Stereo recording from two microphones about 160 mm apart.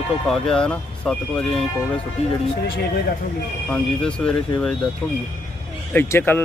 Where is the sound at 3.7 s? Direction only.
5° left (ahead or behind).